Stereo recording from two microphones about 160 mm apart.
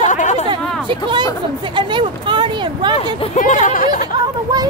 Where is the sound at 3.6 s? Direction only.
55° left (ahead or behind).